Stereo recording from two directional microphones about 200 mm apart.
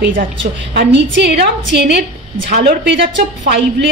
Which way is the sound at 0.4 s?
55° right (ahead or behind).